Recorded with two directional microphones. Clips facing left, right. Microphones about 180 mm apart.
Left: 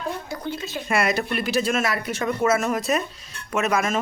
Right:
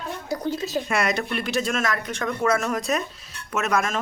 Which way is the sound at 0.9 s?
Centre (ahead or behind).